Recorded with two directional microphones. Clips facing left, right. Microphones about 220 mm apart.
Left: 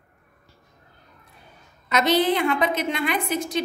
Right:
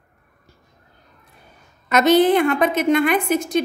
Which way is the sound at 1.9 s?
50° right (ahead or behind).